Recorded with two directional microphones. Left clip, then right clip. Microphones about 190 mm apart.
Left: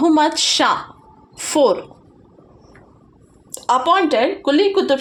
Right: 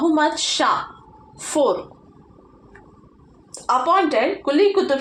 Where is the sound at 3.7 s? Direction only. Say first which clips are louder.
Left 2 dB; 55° left (ahead or behind).